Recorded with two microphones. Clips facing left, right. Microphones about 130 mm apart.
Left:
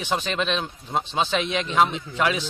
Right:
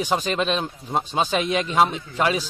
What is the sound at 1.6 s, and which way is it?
Speech, 5° right (ahead or behind).